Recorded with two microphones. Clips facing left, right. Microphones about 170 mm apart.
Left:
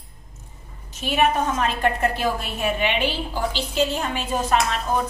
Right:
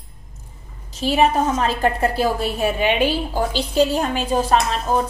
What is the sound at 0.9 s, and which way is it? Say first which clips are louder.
Speech: right 4 dB; 35° right (ahead or behind).